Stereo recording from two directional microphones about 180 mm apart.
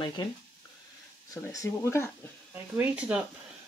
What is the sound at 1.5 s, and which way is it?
Speech, 15° left (ahead or behind).